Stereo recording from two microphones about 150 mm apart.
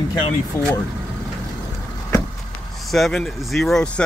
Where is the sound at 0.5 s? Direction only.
20° left (ahead or behind).